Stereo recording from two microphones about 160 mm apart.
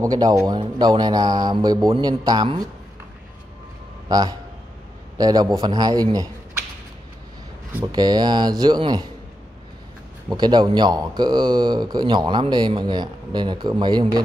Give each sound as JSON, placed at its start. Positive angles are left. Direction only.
{"t": 0.0, "sound": "speech", "side_deg": -20}
{"t": 4.1, "sound": "a man's voice", "side_deg": -25}
{"t": 7.8, "sound": "speech", "side_deg": -25}
{"t": 10.3, "sound": "speech", "side_deg": -25}